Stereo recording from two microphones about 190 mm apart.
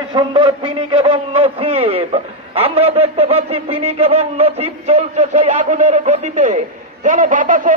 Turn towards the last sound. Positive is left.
turn(degrees=-45)  # may be behind; listen again after turning